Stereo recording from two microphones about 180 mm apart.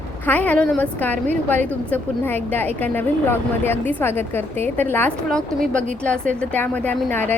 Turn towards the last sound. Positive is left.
turn(degrees=10)  # may be behind; listen again after turning